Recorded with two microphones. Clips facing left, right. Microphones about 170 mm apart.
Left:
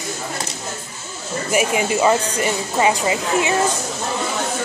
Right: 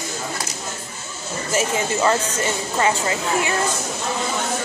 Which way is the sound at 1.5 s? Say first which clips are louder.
Left 3 dB; 15° left (ahead or behind).